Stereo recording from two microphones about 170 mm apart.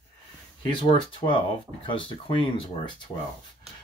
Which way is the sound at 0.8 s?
30° left (ahead or behind).